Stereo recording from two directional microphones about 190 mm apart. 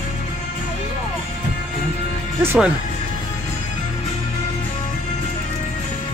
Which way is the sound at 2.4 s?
5° right (ahead or behind).